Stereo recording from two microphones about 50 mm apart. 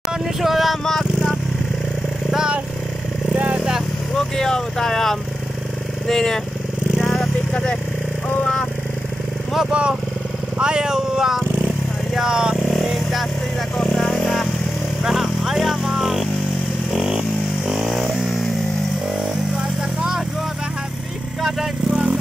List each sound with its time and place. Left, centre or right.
0.4 s vehicle: centre
3.3 s vehicle: right
4.1 s vehicle: centre
6.0 s speech: centre
7.0 s vehicle: centre
9.7 s speech: right
12.6 s vehicle: centre
17.1 s a sound: centre
18.2 s motorcycle: centre
21.4 s vehicle: centre
21.9 s vehicle: right